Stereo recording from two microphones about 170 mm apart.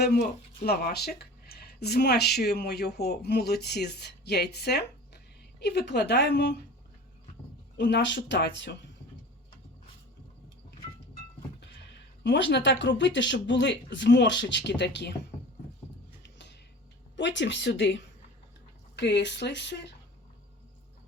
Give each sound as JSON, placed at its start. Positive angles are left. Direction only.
{"t": 0.0, "sound": "speech", "side_deg": 70}
{"t": 7.8, "sound": "speech", "side_deg": 90}
{"t": 12.2, "sound": "speech", "side_deg": 90}
{"t": 16.2, "sound": "music", "side_deg": 90}
{"t": 17.2, "sound": "speech", "side_deg": 90}